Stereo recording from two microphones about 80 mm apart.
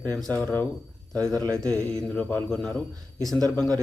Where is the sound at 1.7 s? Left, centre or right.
Centre.